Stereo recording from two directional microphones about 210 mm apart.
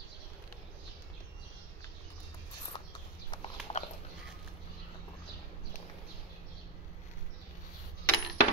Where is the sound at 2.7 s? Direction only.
20° left (ahead or behind).